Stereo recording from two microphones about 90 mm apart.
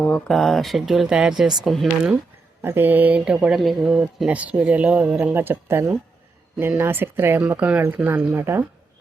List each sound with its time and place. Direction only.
0.3 s speech: 5° left (ahead or behind)
2.6 s speech: 25° right (ahead or behind)
5.3 s speech: 25° right (ahead or behind)
7.4 s speech: 15° right (ahead or behind)